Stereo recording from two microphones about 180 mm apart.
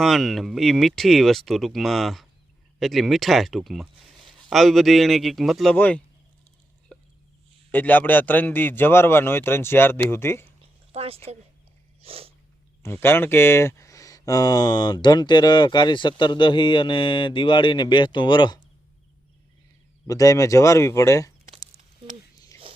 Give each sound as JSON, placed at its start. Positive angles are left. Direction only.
{"t": 0.0, "sound": "a man's voice", "side_deg": 0}
{"t": 7.7, "sound": "a man's voice", "side_deg": 10}
{"t": 10.9, "sound": "speech", "side_deg": -35}
{"t": 12.0, "sound": "cat", "side_deg": -30}
{"t": 12.8, "sound": "speech", "side_deg": 15}
{"t": 20.1, "sound": "a man's voice", "side_deg": 20}
{"t": 22.7, "sound": "a sound", "side_deg": -30}